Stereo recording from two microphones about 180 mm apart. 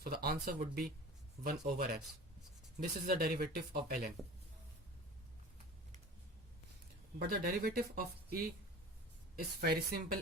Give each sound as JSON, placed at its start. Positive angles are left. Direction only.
{"t": 0.0, "sound": "speech", "side_deg": -55}
{"t": 3.1, "sound": "speech", "side_deg": -55}
{"t": 7.2, "sound": "speech", "side_deg": -55}